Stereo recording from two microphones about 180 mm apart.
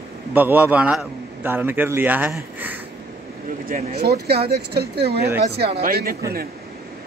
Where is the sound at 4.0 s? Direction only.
65° right (ahead or behind).